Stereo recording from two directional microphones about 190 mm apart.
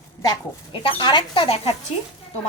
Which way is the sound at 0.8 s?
25° left (ahead or behind).